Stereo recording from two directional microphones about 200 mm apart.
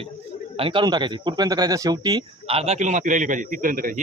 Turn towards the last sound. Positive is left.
turn(degrees=-45)  # may be behind; listen again after turning